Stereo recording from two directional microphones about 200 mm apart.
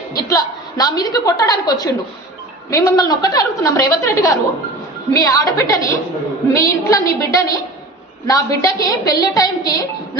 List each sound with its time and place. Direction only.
0.2 s a woman's voice: 15° left (ahead or behind)